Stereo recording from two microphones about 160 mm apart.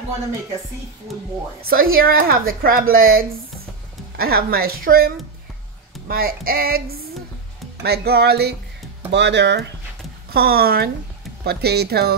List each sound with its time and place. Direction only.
1.7 s speech: 65° right (ahead or behind)
7.8 s speech: 80° right
10.3 s speech: 70° right (ahead or behind)
11.4 s speech: 90° right